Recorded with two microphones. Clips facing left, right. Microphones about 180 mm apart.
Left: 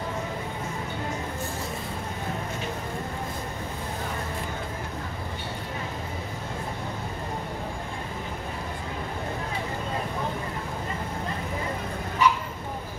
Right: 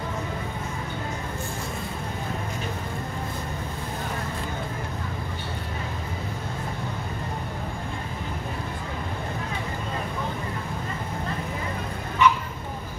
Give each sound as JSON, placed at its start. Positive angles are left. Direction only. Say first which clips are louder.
{"t": 12.2, "sound": "bow-wow", "louder": "right 2 dB", "side_deg": 35}